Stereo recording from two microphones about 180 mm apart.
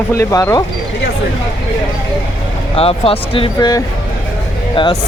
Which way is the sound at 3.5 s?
20° left (ahead or behind).